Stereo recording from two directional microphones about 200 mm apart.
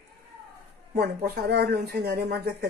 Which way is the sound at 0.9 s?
50° right (ahead or behind).